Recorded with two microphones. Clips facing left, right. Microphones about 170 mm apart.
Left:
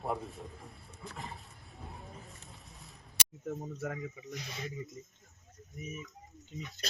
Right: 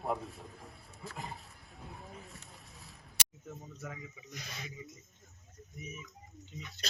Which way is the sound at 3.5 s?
60° left (ahead or behind).